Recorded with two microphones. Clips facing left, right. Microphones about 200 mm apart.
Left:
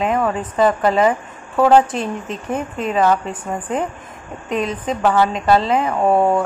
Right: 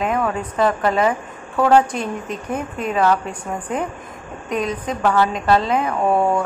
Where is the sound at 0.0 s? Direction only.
Centre (ahead or behind).